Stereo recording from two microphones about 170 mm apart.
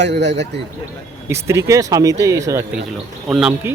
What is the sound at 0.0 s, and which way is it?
Speech, 90° right.